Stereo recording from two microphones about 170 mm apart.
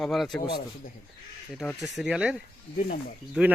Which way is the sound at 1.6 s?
Centre (ahead or behind).